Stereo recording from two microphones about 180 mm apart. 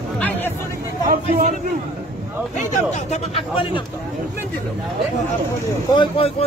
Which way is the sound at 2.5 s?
40° left (ahead or behind).